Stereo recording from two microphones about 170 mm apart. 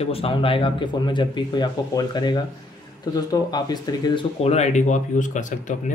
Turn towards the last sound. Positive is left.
turn(degrees=45)  # may be behind; listen again after turning